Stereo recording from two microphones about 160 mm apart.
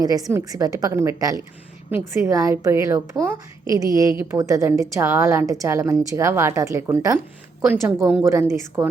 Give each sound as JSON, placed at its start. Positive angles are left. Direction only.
{"t": 0.0, "sound": "a woman's voice", "side_deg": -25}